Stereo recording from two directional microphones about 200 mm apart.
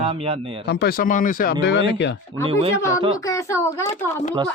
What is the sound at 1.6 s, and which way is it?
Speech, 60° left (ahead or behind).